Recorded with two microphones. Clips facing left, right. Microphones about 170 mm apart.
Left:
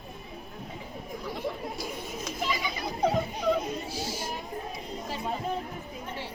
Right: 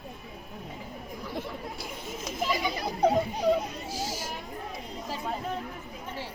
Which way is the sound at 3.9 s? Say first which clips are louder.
Right 1 dB; 45° right (ahead or behind).